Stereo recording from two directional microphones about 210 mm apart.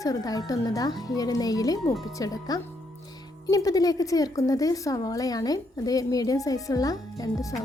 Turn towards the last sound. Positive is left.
turn(degrees=15)  # may be behind; listen again after turning